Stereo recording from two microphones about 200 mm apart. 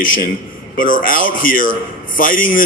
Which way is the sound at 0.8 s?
45° left (ahead or behind).